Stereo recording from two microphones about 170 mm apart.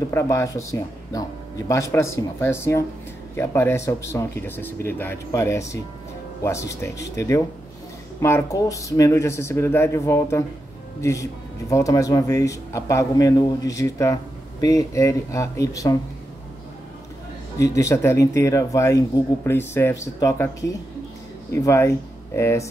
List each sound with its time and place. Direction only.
0.1 s speech: 15° left (ahead or behind)
17.6 s speech: 20° left (ahead or behind)